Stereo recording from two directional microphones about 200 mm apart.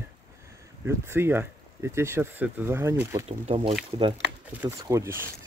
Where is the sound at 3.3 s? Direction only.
30° right (ahead or behind).